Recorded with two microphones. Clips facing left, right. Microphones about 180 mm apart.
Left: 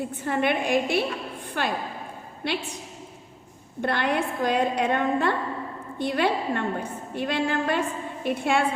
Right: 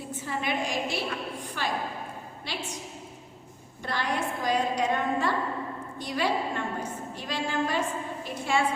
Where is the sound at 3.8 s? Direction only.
60° left (ahead or behind).